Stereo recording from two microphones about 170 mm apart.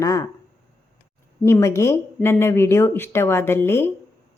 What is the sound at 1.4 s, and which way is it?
A woman's voice, 15° left (ahead or behind).